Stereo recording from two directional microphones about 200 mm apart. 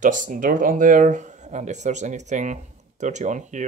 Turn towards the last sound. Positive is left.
turn(degrees=-35)  # may be behind; listen again after turning